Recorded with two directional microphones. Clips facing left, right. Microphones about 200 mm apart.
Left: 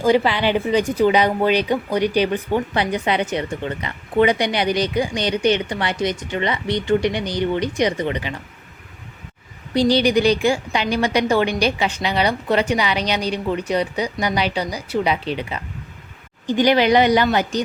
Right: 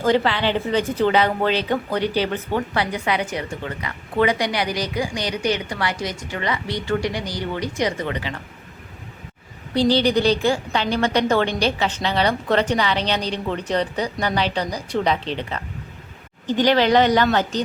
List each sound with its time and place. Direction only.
0.0 s a woman's voice: 10° left (ahead or behind)
9.7 s a woman's voice: 15° left (ahead or behind)